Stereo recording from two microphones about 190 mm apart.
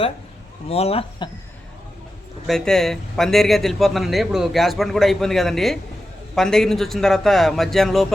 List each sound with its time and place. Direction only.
0.7 s speech: 30° left (ahead or behind)
2.5 s a man's voice: centre (ahead or behind)